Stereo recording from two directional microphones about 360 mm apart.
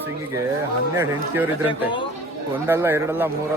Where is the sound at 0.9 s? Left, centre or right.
Centre.